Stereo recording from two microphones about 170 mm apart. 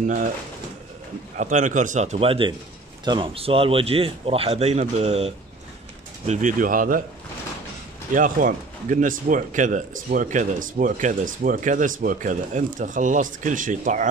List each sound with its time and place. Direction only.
0.0 s speech: 50° right (ahead or behind)
1.4 s a man's voice: 45° right (ahead or behind)
8.1 s speech: 55° right (ahead or behind)